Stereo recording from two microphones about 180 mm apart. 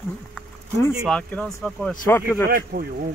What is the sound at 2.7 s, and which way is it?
Speech, 55° right (ahead or behind).